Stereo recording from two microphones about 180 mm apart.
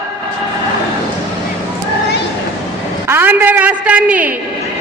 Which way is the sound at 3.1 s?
10° right (ahead or behind).